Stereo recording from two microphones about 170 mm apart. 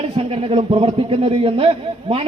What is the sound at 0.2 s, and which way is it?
A man's voice, 35° right (ahead or behind).